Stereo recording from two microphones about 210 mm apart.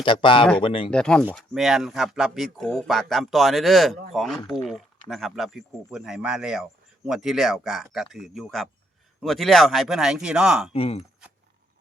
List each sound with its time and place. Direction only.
0.0 s speech: 25° left (ahead or behind)
0.9 s speech: 5° left (ahead or behind)
10.7 s speech: 30° left (ahead or behind)